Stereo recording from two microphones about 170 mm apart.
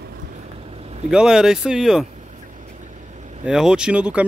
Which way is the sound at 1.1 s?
5° right (ahead or behind).